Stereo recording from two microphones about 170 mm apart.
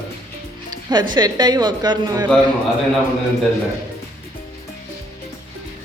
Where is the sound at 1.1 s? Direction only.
25° right (ahead or behind).